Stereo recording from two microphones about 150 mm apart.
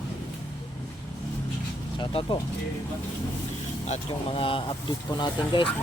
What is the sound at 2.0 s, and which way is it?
Speech, 35° left (ahead or behind).